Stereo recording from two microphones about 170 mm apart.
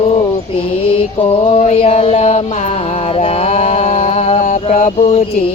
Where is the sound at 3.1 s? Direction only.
35° left (ahead or behind).